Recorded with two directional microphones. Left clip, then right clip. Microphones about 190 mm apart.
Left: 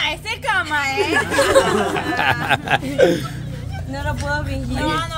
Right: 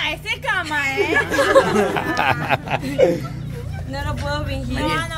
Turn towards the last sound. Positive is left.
turn(degrees=5)  # may be behind; listen again after turning